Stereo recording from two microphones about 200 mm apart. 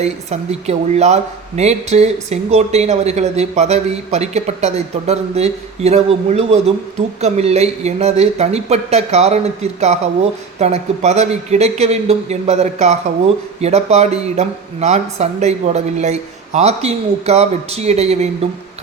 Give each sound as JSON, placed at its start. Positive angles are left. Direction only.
{"t": 0.0, "sound": "speech", "side_deg": -35}